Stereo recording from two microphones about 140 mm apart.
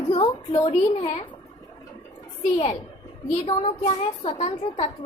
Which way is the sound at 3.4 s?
40° left (ahead or behind).